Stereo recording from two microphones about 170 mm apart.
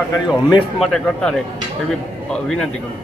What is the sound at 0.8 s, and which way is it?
Speech, 5° left (ahead or behind).